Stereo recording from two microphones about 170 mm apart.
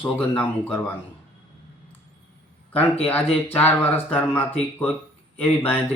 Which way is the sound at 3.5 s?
10° left (ahead or behind).